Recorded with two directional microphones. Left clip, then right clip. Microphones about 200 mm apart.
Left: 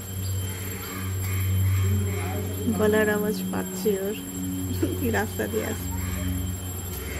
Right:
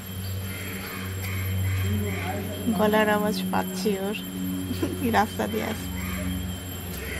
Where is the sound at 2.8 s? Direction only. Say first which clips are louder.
Right 1 dB; 15° left (ahead or behind).